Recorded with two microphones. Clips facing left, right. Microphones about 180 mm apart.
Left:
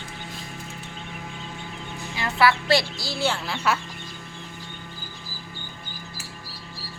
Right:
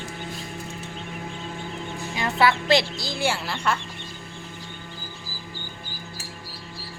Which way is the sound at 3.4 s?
5° left (ahead or behind).